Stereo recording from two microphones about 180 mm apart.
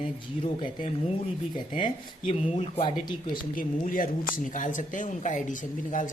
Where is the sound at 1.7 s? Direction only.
30° left (ahead or behind).